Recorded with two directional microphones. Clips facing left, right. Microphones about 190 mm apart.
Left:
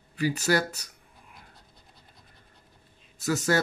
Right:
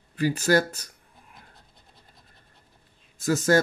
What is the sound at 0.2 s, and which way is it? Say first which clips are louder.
Speech: right 3 dB; 50° right (ahead or behind).